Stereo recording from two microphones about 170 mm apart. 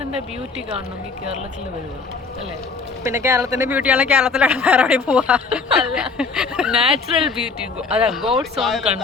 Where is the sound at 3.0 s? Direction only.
15° right (ahead or behind).